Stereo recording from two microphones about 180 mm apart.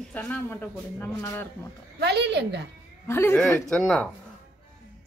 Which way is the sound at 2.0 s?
70° right (ahead or behind).